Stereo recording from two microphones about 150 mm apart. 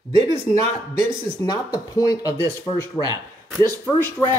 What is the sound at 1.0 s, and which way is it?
Speech, 25° left (ahead or behind).